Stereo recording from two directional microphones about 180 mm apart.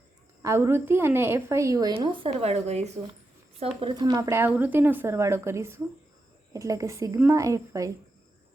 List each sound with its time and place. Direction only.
0.4 s a woman's voice: 15° right (ahead or behind); by 3.0 s 35° right (ahead or behind)
3.8 s a woman's voice: 25° right (ahead or behind)